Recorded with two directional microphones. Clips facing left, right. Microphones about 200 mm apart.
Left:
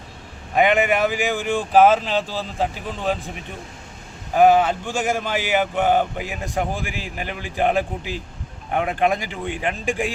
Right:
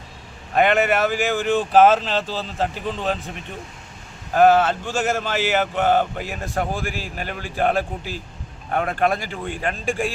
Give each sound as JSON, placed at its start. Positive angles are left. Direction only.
{"t": 0.5, "sound": "speech", "side_deg": 15}
{"t": 4.4, "sound": "speech", "side_deg": 15}